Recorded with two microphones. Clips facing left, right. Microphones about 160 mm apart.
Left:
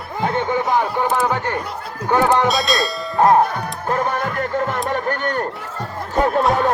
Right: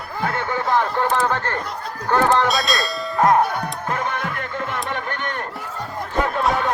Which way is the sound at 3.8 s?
40° left (ahead or behind).